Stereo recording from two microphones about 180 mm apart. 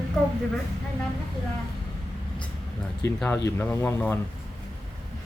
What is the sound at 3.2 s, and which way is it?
Speech, 10° left (ahead or behind).